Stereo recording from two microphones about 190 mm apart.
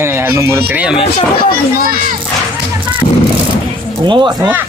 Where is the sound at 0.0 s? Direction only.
15° right (ahead or behind).